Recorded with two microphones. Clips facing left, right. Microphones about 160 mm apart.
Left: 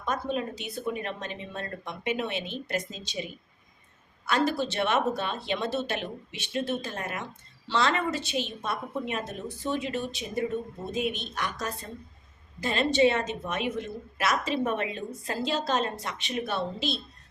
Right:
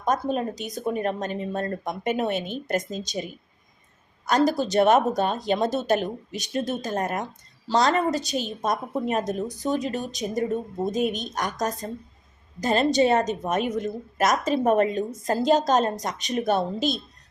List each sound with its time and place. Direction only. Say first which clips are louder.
0.0 s a woman's voice: right 5 dB; 45° right (ahead or behind)
4.3 s a woman's voice: right 5 dB; 40° right (ahead or behind)